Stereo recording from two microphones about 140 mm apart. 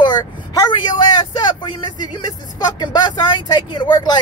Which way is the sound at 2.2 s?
30° left (ahead or behind).